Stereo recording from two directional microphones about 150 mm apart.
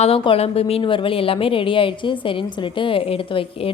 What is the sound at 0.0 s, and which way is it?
A woman's voice, 40° left (ahead or behind).